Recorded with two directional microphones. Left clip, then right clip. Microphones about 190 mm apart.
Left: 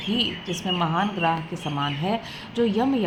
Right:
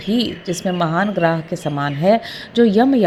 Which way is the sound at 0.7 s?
30° right (ahead or behind).